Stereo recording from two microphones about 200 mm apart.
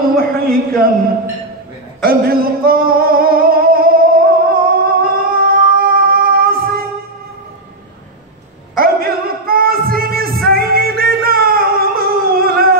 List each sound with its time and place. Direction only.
0.1 s speech: 50° right (ahead or behind)
2.0 s music: 50° right (ahead or behind)
8.7 s music: 50° right (ahead or behind)